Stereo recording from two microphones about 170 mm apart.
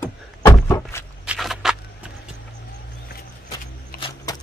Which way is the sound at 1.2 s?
Centre (ahead or behind).